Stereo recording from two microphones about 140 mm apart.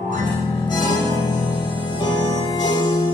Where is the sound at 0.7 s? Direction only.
30° left (ahead or behind).